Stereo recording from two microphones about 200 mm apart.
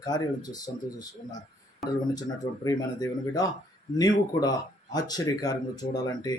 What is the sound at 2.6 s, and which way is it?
Speech, 20° left (ahead or behind).